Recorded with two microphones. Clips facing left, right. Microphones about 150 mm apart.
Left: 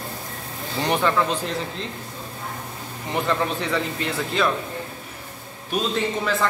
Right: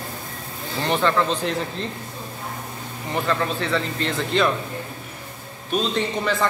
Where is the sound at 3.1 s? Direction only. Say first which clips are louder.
Even; 15° left (ahead or behind).